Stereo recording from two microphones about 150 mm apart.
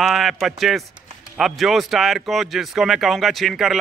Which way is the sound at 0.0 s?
Centre (ahead or behind).